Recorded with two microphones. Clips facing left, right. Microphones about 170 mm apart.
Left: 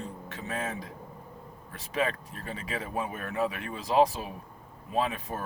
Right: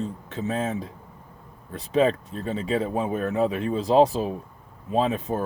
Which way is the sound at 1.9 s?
25° right (ahead or behind).